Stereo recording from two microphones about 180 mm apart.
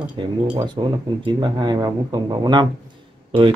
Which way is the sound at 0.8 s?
30° right (ahead or behind).